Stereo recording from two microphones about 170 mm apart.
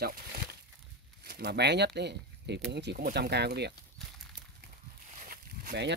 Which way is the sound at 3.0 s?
70° right (ahead or behind).